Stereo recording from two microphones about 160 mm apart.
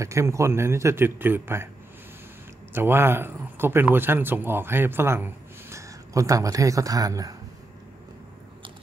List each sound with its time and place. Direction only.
0.0 s a man's voice: 20° right (ahead or behind)
2.7 s speech: 15° right (ahead or behind)